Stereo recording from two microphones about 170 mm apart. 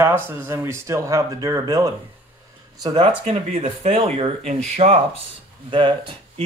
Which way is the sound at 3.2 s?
45° right (ahead or behind).